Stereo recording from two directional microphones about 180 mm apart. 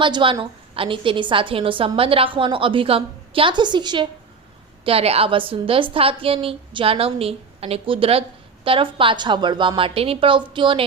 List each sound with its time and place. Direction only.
0.0 s a woman's voice: 25° right (ahead or behind)